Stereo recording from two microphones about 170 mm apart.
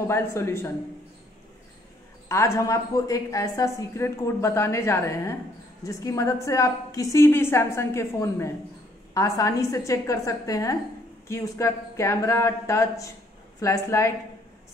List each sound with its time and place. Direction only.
0.1 s a woman's voice: 15° left (ahead or behind)
2.2 s a woman's voice: 15° left (ahead or behind)